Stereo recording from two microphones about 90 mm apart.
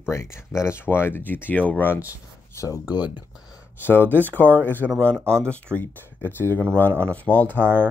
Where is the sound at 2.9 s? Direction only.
55° left (ahead or behind).